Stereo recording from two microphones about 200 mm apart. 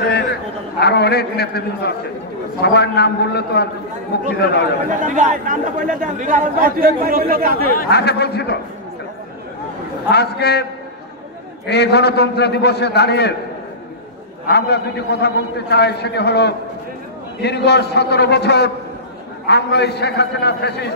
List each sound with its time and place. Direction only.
0.7 s a man's voice: 55° left (ahead or behind)
5.0 s a man's voice: 40° right (ahead or behind)
7.7 s a man's voice: 55° left (ahead or behind)
10.1 s a man's voice: 55° left (ahead or behind)
14.5 s a man's voice: 55° left (ahead or behind)